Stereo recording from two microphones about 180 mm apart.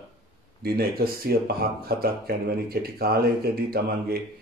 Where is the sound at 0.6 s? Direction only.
55° right (ahead or behind).